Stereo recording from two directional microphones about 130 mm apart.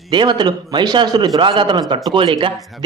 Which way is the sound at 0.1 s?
35° right (ahead or behind).